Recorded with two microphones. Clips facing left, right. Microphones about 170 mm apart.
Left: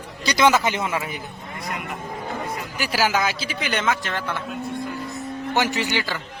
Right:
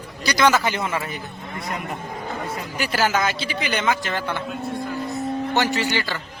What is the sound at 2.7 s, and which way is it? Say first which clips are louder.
A man's voice: right 1 dB; 5° left (ahead or behind).